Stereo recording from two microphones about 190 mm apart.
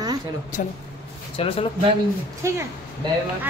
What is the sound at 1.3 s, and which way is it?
Speech, 30° left (ahead or behind).